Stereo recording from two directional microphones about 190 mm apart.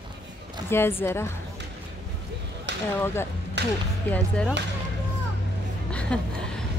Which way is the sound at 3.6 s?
65° right (ahead or behind).